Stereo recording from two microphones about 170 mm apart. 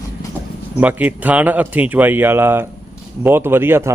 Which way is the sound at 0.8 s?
10° right (ahead or behind).